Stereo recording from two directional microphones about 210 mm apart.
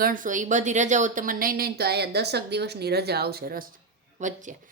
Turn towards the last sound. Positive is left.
turn(degrees=-35)  # may be behind; listen again after turning